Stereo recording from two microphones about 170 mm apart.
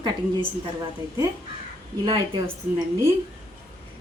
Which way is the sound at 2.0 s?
30° right (ahead or behind).